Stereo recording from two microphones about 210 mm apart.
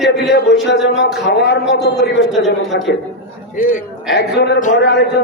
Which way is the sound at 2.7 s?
55° left (ahead or behind).